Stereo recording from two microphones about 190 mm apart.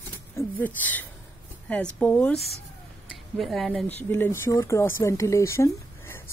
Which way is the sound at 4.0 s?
10° left (ahead or behind).